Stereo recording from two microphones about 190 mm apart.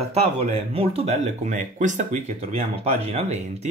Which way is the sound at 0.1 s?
30° right (ahead or behind).